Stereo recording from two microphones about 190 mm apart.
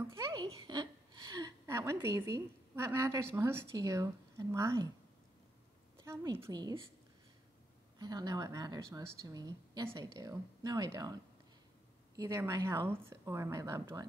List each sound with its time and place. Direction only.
0.0 s a sound: 15° right (ahead or behind)
6.0 s a woman's voice: 15° right (ahead or behind)
8.0 s a woman's voice: 20° right (ahead or behind)
12.2 s speech: 15° right (ahead or behind)